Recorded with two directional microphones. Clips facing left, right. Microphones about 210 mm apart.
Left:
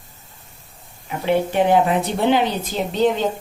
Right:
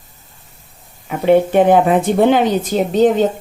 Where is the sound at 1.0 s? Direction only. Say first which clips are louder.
Right 7 dB; 50° right (ahead or behind).